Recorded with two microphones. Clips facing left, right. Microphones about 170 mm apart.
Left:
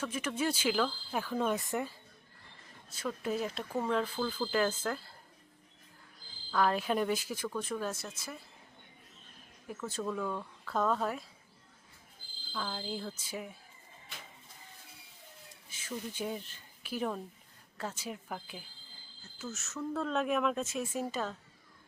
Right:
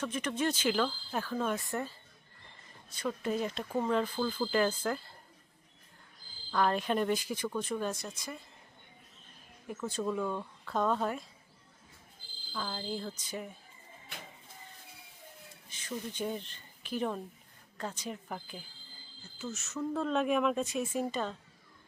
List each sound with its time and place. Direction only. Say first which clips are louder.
0.0 s speech: right 1 dB; 5° left (ahead or behind)
3.1 s speech: right 1 dB; 5° left (ahead or behind)
3.7 s speech: right 2 dB; 5° right (ahead or behind)
6.5 s speech: even; centre (ahead or behind)
9.6 s speech: right 2 dB; 5° left (ahead or behind)
10.0 s speech: right 2 dB; 10° right (ahead or behind)
12.5 s speech: right 1 dB; centre (ahead or behind)
15.7 s speech: right 1 dB; 5° left (ahead or behind)